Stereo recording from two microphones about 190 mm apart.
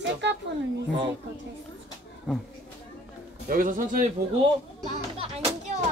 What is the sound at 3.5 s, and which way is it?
Speech, 45° right (ahead or behind).